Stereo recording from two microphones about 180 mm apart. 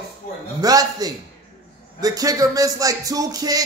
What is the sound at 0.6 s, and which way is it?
Speech, 20° right (ahead or behind).